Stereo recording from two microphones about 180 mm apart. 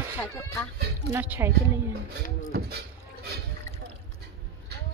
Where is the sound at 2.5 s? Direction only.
60° right (ahead or behind).